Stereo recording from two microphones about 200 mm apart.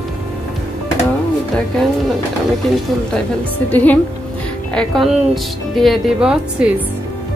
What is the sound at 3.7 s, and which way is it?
Speech, 10° left (ahead or behind).